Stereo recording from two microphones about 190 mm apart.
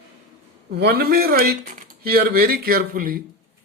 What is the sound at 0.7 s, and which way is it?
Speech, 55° right (ahead or behind).